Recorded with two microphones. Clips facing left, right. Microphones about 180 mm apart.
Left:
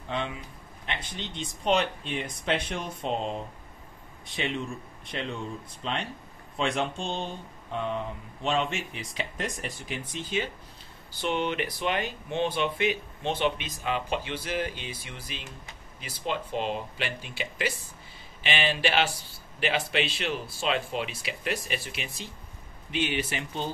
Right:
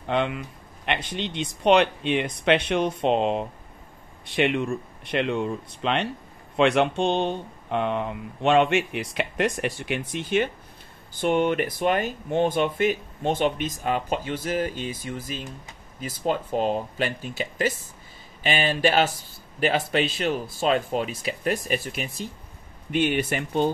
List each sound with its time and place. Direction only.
0.1 s speech: 65° right (ahead or behind)
4.3 s speech: 65° right (ahead or behind)
11.1 s speech: 50° right (ahead or behind)